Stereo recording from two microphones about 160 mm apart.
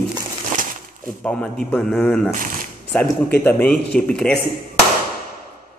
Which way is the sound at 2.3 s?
60° right (ahead or behind).